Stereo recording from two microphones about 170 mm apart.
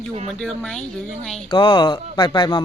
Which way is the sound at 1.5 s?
25° left (ahead or behind).